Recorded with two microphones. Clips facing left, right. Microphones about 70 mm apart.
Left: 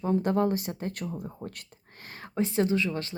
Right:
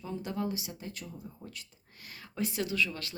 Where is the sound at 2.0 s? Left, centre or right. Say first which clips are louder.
Left 6 dB; left.